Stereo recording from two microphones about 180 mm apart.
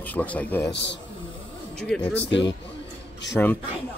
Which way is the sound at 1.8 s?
5° left (ahead or behind).